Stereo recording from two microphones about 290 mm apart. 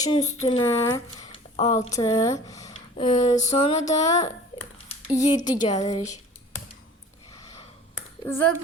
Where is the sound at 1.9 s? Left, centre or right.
Centre.